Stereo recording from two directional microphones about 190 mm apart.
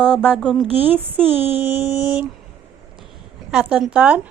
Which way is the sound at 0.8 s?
10° right (ahead or behind).